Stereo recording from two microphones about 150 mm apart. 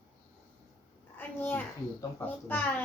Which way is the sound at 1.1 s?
10° left (ahead or behind).